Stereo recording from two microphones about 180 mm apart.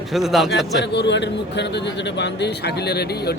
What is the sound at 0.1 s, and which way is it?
Speech, centre (ahead or behind).